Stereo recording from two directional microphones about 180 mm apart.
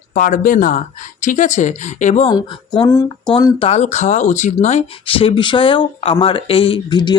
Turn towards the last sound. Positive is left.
turn(degrees=25)  # may be behind; listen again after turning